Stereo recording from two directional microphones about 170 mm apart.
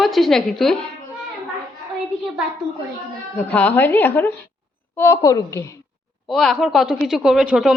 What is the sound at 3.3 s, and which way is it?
Speech, 10° left (ahead or behind).